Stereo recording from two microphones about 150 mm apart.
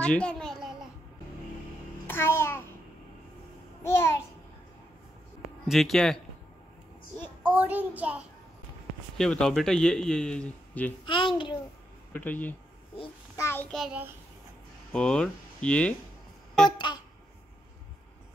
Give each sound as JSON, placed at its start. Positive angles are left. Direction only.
{"t": 0.0, "sound": "a sound", "side_deg": 5}
{"t": 2.0, "sound": "babbling", "side_deg": 15}
{"t": 3.8, "sound": "a child's voice", "side_deg": 15}
{"t": 5.7, "sound": "a man's voice", "side_deg": 0}
{"t": 7.4, "sound": "a child's voice", "side_deg": -10}
{"t": 9.2, "sound": "a man's voice", "side_deg": 5}
{"t": 11.1, "sound": "a child's voice", "side_deg": 35}
{"t": 12.1, "sound": "a child's voice", "side_deg": 10}
{"t": 13.7, "sound": "a man's voice", "side_deg": 0}
{"t": 16.7, "sound": "a sound", "side_deg": 30}